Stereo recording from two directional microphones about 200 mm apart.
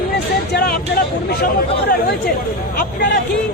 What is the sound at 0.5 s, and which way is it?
Speech, 50° left (ahead or behind).